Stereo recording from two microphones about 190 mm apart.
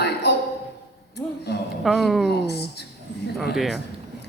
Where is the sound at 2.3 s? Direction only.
60° left (ahead or behind).